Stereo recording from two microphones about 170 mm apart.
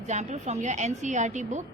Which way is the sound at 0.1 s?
45° right (ahead or behind).